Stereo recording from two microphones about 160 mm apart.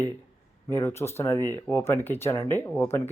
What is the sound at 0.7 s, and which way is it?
Speech, 15° left (ahead or behind).